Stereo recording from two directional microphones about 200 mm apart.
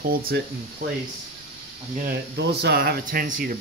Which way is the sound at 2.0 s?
60° right (ahead or behind).